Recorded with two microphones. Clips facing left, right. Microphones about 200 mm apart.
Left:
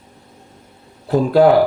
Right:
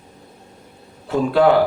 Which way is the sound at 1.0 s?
40° left (ahead or behind).